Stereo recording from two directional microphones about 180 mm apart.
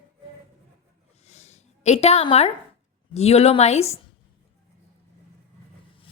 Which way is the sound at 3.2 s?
35° left (ahead or behind).